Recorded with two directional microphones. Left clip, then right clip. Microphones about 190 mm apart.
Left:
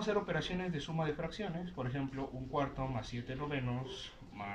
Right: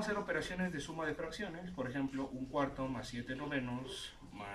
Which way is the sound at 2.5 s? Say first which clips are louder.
Left 1 dB; 15° left (ahead or behind).